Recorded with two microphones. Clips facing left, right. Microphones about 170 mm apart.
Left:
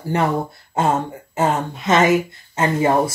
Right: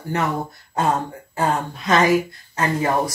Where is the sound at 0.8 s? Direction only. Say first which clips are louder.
Left 2 dB; 25° left (ahead or behind).